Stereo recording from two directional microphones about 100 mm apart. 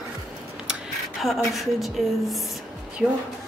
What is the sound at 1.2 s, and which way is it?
A woman's voice, centre (ahead or behind).